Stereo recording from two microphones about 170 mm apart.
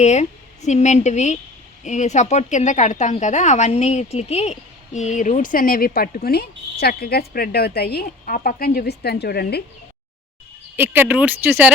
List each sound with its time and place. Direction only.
0.0 s a woman's voice: 40° left (ahead or behind); by 9.6 s 70° left (ahead or behind)
10.8 s speech: 10° right (ahead or behind)